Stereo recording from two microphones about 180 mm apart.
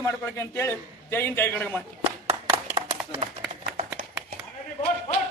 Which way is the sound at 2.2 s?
30° right (ahead or behind).